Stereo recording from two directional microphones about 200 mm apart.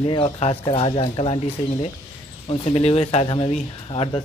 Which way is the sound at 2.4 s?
30° left (ahead or behind).